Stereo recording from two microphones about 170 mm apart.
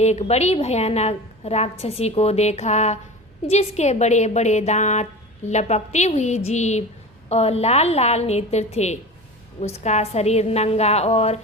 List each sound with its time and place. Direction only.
0.0 s a woman's voice: 40° left (ahead or behind)